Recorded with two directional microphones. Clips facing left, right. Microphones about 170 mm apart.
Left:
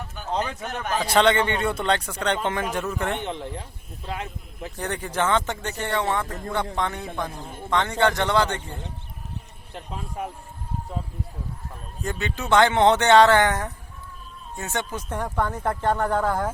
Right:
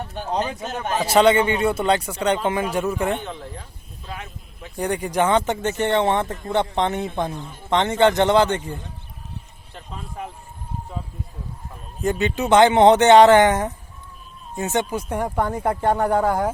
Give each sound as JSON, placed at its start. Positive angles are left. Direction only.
{"t": 0.3, "sound": "a man's voice", "side_deg": -20}
{"t": 1.1, "sound": "a man's voice", "side_deg": -10}
{"t": 3.2, "sound": "speech", "side_deg": 25}
{"t": 4.8, "sound": "a man's voice", "side_deg": -15}
{"t": 9.7, "sound": "speech", "side_deg": 10}
{"t": 12.0, "sound": "a man's voice", "side_deg": -20}